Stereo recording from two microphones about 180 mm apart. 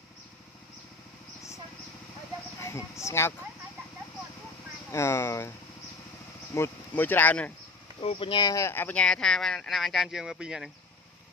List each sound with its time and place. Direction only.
2.6 s speech: 15° left (ahead or behind)
4.9 s speech: 15° left (ahead or behind)
6.5 s speech: 10° left (ahead or behind)
8.0 s speech: 30° left (ahead or behind); by 10.7 s 5° right (ahead or behind)